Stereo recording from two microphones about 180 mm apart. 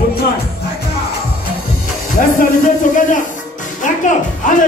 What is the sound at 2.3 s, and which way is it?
Speech, 45° left (ahead or behind).